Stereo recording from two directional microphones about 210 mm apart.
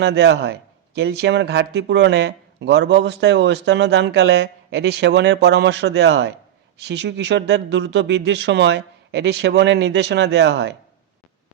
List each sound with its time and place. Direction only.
0.0 s speech: 55° right (ahead or behind)